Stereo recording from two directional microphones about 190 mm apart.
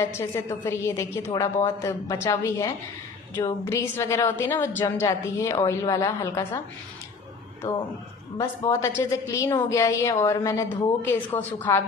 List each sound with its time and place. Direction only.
0.0 s a woman's voice: 15° left (ahead or behind)
8.4 s a woman's voice: 15° left (ahead or behind)